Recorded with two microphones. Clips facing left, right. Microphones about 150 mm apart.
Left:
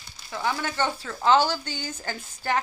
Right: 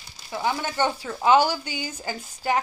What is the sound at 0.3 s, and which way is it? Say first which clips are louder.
A woman's voice: right 2 dB; 20° right (ahead or behind).